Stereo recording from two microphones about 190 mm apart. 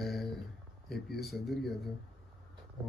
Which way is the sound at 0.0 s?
Centre (ahead or behind).